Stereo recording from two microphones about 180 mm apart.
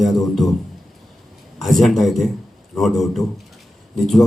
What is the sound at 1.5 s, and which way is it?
A man's voice, centre (ahead or behind).